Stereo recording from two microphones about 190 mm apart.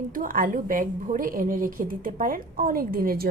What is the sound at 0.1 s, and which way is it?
A woman's voice, 45° right (ahead or behind).